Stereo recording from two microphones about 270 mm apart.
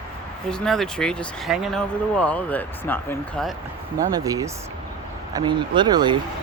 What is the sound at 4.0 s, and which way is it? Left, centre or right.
Speech, centre.